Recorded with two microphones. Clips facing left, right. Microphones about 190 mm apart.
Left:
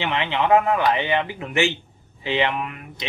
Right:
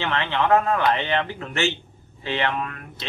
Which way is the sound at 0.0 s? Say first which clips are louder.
Left 1 dB; 15° left (ahead or behind).